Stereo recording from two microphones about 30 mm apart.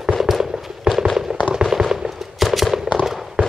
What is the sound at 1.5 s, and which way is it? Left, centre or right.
Fireworks, centre.